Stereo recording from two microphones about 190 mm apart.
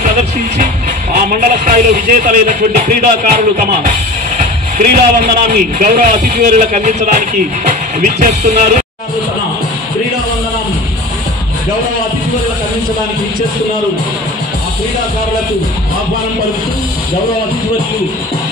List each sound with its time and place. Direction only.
0.0 s a man's voice: 40° right (ahead or behind)